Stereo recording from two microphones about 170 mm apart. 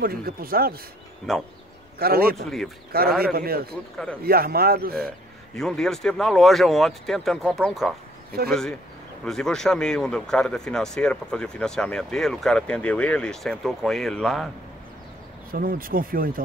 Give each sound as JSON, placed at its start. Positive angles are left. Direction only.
{"t": 0.0, "sound": "a man's voice", "side_deg": -60}
{"t": 2.0, "sound": "a man's voice", "side_deg": -60}
{"t": 5.6, "sound": "speech", "side_deg": 5}
{"t": 15.5, "sound": "a man's voice", "side_deg": -55}